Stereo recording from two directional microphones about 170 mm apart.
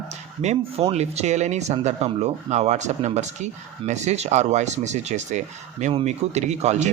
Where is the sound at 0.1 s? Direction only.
40° right (ahead or behind).